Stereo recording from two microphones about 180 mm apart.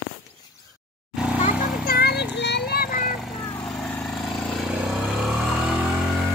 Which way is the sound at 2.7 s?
50° left (ahead or behind).